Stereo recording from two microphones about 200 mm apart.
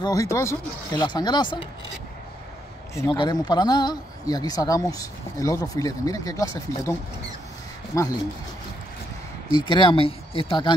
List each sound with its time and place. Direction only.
0.0 s speech: 15° left (ahead or behind)
2.9 s speech: 20° left (ahead or behind)
9.5 s speech: 25° left (ahead or behind)